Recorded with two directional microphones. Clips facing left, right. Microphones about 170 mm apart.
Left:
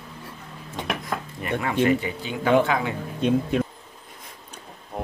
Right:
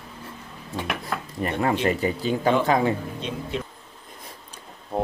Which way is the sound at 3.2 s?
50° left (ahead or behind).